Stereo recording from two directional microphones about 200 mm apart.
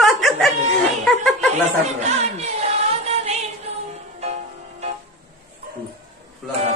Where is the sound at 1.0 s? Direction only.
Centre (ahead or behind).